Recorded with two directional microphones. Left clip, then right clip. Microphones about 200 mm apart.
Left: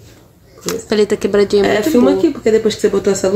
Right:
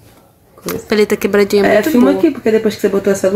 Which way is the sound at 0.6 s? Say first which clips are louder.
Right 1 dB; centre (ahead or behind).